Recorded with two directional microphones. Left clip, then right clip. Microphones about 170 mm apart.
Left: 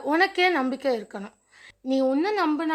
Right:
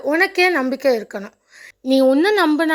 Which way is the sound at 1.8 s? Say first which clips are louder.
Right 9 dB; 35° right (ahead or behind).